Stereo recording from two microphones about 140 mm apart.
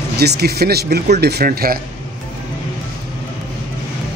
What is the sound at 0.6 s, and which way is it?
Speech, 90° right.